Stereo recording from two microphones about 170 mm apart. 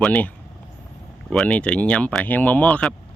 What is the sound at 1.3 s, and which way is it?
Speech, 5° left (ahead or behind).